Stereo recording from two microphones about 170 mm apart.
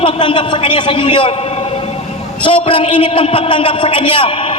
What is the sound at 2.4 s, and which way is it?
A man's voice, 30° left (ahead or behind).